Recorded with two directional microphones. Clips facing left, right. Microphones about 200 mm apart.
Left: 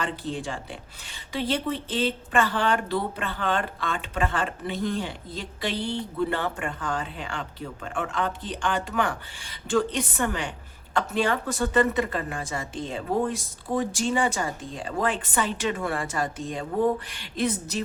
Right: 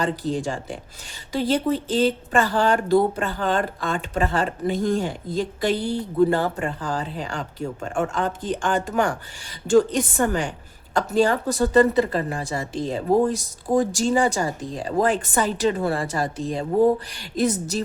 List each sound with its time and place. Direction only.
0.0 s speech: 40° right (ahead or behind)